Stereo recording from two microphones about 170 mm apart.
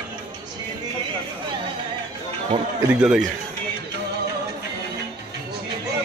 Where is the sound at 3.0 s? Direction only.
5° right (ahead or behind).